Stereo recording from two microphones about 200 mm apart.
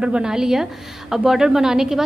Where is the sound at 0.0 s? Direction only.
5° right (ahead or behind).